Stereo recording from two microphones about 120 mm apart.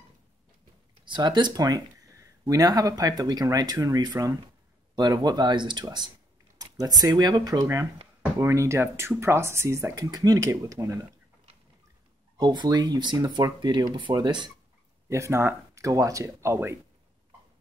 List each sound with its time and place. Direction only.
1.0 s speech: 40° right (ahead or behind)
7.6 s speech: 20° right (ahead or behind)
12.4 s speech: 35° right (ahead or behind)
15.0 s speech: 25° right (ahead or behind)